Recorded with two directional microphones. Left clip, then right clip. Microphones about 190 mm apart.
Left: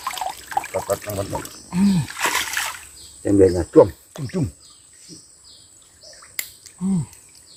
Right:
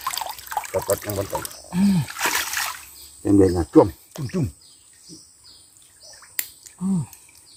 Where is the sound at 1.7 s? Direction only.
Centre (ahead or behind).